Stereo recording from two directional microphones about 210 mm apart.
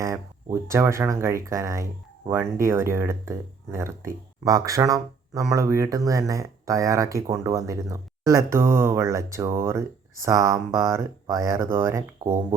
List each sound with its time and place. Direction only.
0.0 s speech: 15° right (ahead or behind)